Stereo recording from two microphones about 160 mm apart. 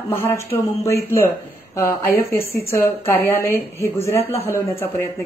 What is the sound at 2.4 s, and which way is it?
A woman's voice, 15° left (ahead or behind).